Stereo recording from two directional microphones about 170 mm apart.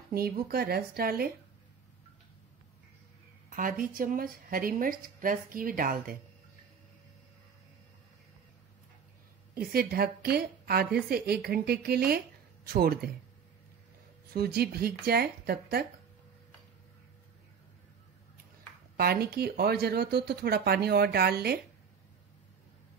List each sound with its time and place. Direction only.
0.1 s speech: 65° right (ahead or behind)
3.4 s speech: 55° right (ahead or behind)
9.5 s speech: 60° right (ahead or behind)
14.3 s speech: 70° right (ahead or behind)
18.9 s speech: 65° right (ahead or behind)